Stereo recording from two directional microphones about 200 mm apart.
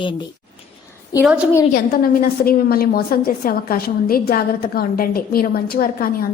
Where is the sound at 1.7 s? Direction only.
45° left (ahead or behind).